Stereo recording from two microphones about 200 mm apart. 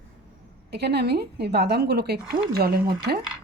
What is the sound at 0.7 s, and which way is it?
Speech, 55° right (ahead or behind).